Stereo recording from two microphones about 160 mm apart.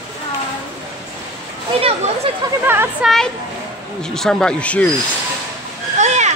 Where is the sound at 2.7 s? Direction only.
15° right (ahead or behind).